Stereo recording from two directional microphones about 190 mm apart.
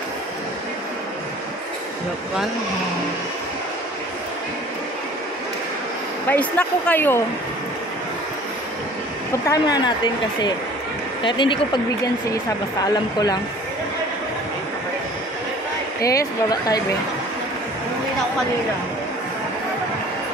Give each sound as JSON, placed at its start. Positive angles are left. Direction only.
{"t": 6.2, "sound": "speech", "side_deg": 10}
{"t": 9.5, "sound": "a woman's voice", "side_deg": 20}
{"t": 12.8, "sound": "a woman's voice", "side_deg": 20}
{"t": 16.0, "sound": "a woman's voice", "side_deg": 15}